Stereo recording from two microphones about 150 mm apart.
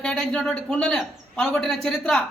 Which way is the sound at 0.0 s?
5° left (ahead or behind).